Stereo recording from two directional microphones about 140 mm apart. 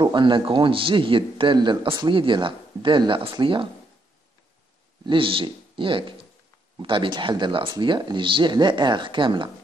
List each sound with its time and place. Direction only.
0.0 s a man's voice: 35° right (ahead or behind)
5.0 s a man's voice: 40° right (ahead or behind)